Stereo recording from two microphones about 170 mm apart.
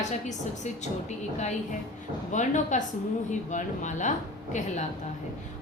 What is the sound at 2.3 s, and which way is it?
A woman's voice, 45° left (ahead or behind).